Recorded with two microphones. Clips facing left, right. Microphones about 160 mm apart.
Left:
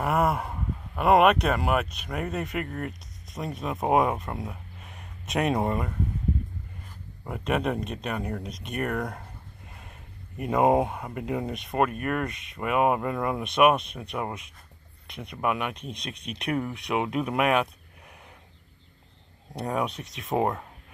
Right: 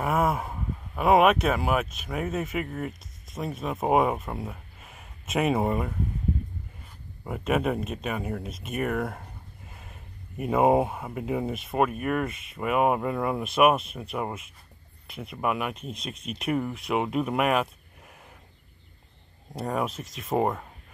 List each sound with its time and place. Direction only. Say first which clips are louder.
0.0 s speech: even; centre (ahead or behind)
7.2 s speech: right 1 dB; 5° right (ahead or behind)
19.5 s speech: even; centre (ahead or behind)